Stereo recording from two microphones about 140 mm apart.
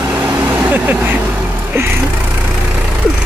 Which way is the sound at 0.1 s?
10° right (ahead or behind).